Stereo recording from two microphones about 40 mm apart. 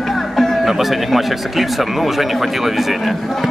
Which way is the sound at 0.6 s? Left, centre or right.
Centre.